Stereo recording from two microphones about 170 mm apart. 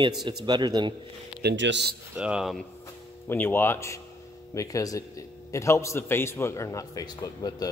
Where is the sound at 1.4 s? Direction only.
85° right.